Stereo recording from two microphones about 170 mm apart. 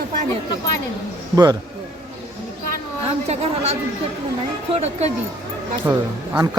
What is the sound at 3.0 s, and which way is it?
Speech, 40° right (ahead or behind).